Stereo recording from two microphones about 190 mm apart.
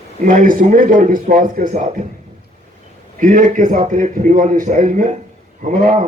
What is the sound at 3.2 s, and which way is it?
A man's voice, 45° right (ahead or behind).